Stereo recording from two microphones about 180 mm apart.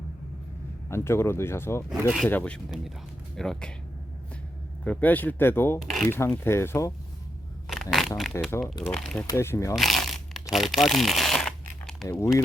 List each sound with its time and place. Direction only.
0.9 s speech: 15° left (ahead or behind)
1.9 s speech: centre (ahead or behind)
4.8 s speech: 10° left (ahead or behind)
7.7 s a sound: centre (ahead or behind)
8.2 s speech: 10° left (ahead or behind)
9.7 s crumpling: centre (ahead or behind)
10.5 s speech: centre (ahead or behind)
12.1 s speech: 15° left (ahead or behind)